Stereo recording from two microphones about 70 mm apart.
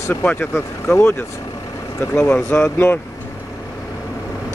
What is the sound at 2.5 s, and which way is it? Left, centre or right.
Speech, left.